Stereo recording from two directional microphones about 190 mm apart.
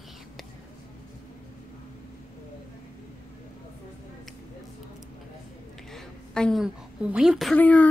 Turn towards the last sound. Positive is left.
turn(degrees=10)  # may be behind; listen again after turning